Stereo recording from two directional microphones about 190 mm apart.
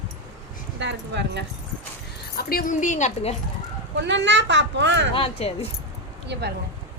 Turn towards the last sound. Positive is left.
turn(degrees=-60)  # may be behind; listen again after turning